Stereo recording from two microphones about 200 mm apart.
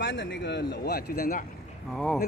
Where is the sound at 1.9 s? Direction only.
Centre (ahead or behind).